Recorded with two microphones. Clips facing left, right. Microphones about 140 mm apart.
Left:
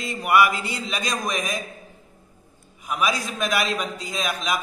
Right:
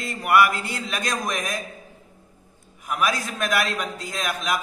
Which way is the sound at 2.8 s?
10° left (ahead or behind).